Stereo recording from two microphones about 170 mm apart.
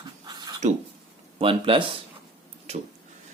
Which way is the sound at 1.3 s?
30° right (ahead or behind).